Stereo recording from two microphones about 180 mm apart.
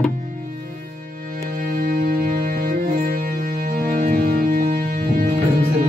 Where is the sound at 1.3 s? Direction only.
55° right (ahead or behind).